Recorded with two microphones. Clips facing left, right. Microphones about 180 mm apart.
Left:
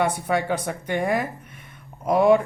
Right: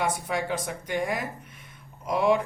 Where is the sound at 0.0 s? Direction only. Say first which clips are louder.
Left 5 dB; 60° left (ahead or behind).